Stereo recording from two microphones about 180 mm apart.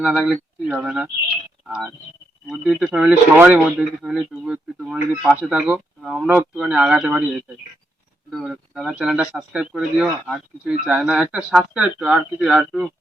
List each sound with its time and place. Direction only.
0.0 s speech: 5° right (ahead or behind)
2.6 s speech: 5° right (ahead or behind)
8.3 s speech: centre (ahead or behind)